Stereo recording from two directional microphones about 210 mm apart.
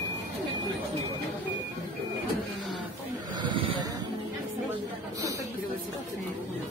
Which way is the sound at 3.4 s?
20° right (ahead or behind).